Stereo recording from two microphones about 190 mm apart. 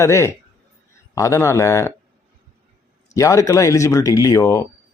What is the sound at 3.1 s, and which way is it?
A man's voice, 15° left (ahead or behind).